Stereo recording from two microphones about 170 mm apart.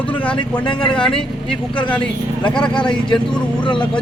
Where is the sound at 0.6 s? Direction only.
30° left (ahead or behind).